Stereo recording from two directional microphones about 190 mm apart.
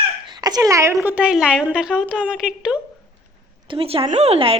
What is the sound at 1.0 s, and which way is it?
A woman's voice, 5° right (ahead or behind).